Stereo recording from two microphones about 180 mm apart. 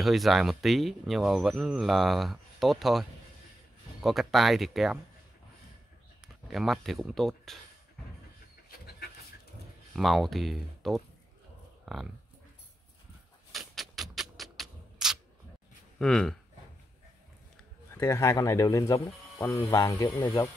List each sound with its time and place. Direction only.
0.0 s speech: centre (ahead or behind)
6.2 s speech: centre (ahead or behind)
8.6 s a sound: 60° left (ahead or behind)
9.9 s speech: centre (ahead or behind)
11.8 s dog: centre (ahead or behind)
13.5 s a sound: centre (ahead or behind)
16.0 s speech: 5° left (ahead or behind)
17.9 s speech: 15° left (ahead or behind)